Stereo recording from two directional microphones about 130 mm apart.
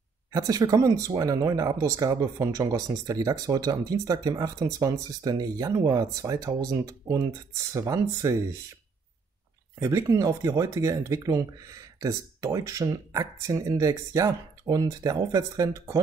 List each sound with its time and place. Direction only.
0.3 s speech: 30° right (ahead or behind)
9.8 s speech: 25° right (ahead or behind)